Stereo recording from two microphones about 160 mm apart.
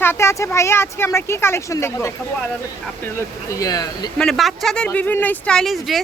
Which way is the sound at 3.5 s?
20° left (ahead or behind).